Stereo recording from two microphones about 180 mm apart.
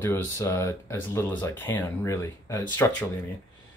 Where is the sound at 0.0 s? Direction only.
15° left (ahead or behind).